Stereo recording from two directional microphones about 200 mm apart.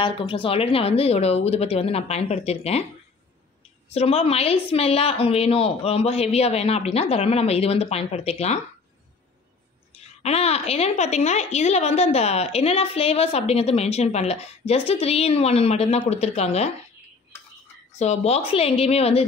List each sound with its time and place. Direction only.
0.0 s a woman's voice: 25° left (ahead or behind)
3.9 s a woman's voice: 30° left (ahead or behind)
9.9 s a woman's voice: 30° left (ahead or behind)
17.9 s a woman's voice: 35° left (ahead or behind)